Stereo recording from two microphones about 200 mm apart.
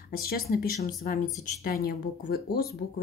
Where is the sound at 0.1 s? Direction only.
50° left (ahead or behind).